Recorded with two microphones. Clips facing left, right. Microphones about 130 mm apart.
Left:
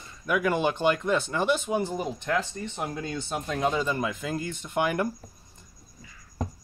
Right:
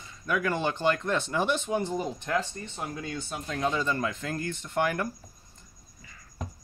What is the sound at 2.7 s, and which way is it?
Speech, 20° left (ahead or behind).